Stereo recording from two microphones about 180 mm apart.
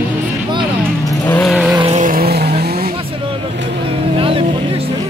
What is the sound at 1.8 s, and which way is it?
Vehicle, 35° right (ahead or behind).